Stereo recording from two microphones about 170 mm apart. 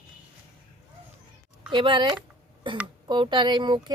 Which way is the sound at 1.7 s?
30° right (ahead or behind).